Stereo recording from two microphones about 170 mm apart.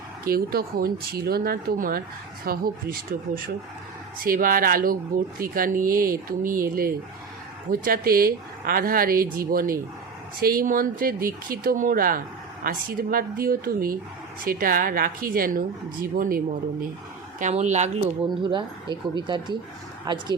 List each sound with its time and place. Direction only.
0.3 s speech: 60° right (ahead or behind)
17.4 s speech: 40° right (ahead or behind)
18.4 s speech: 25° right (ahead or behind)